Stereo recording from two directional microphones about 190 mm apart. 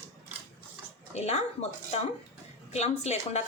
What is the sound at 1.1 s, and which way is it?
Speech, 35° left (ahead or behind).